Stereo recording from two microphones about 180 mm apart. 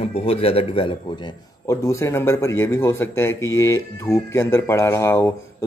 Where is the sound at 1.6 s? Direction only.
15° left (ahead or behind).